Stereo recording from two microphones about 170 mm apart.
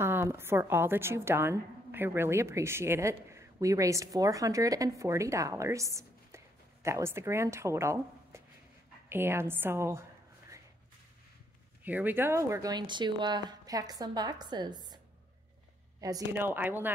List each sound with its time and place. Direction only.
0.0 s a woman's voice: 15° right (ahead or behind)
11.8 s speech: 10° right (ahead or behind)
16.0 s a woman's voice: 15° right (ahead or behind)